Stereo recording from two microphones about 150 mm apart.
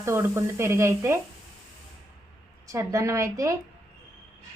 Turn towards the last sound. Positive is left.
turn(degrees=-20)  # may be behind; listen again after turning